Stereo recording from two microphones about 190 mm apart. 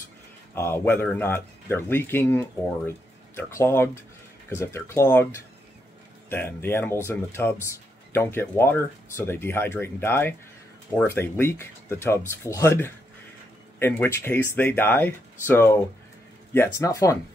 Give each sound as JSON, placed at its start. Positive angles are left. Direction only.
{"t": 0.6, "sound": "speech", "side_deg": 10}